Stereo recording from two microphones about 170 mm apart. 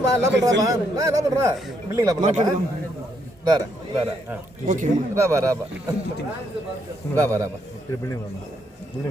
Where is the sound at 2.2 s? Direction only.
45° right (ahead or behind).